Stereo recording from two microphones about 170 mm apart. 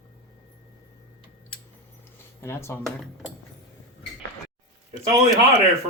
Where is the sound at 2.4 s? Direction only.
15° left (ahead or behind).